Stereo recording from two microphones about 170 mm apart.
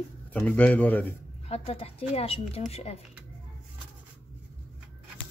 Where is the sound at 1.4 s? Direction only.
35° left (ahead or behind).